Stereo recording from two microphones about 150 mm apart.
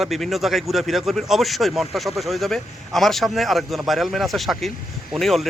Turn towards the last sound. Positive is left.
turn(degrees=0)  # may be behind; listen again after turning